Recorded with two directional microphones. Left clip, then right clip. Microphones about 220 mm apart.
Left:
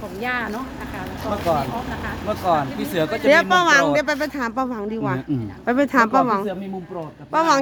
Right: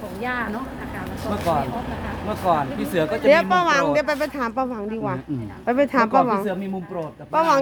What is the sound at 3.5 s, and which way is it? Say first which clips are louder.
Speech: left 3 dB; 10° left (ahead or behind).